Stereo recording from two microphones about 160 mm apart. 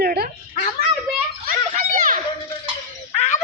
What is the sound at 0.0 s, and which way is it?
Dog, 75° right (ahead or behind).